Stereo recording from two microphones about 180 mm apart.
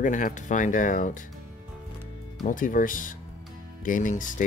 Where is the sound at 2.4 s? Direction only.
50° left (ahead or behind).